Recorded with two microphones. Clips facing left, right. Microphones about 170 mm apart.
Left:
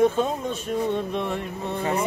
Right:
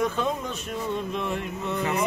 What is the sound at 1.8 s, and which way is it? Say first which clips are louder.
Speech: left 1 dB; 30° left (ahead or behind).